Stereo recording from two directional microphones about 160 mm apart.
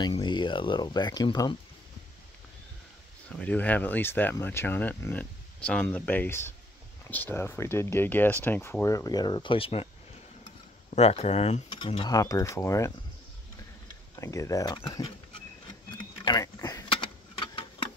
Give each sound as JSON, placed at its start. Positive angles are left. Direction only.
{"t": 0.1, "sound": "speech", "side_deg": 30}
{"t": 3.3, "sound": "speech", "side_deg": 10}
{"t": 11.0, "sound": "speech", "side_deg": 40}
{"t": 12.0, "sound": "speech", "side_deg": 20}
{"t": 14.1, "sound": "speech", "side_deg": 20}
{"t": 16.0, "sound": "a sound", "side_deg": 25}